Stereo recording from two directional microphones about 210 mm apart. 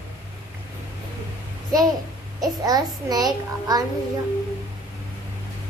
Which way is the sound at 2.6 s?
20° right (ahead or behind).